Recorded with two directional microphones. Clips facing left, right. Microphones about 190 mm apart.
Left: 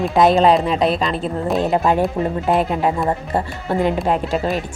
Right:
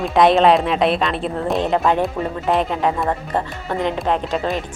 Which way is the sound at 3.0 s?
25° left (ahead or behind).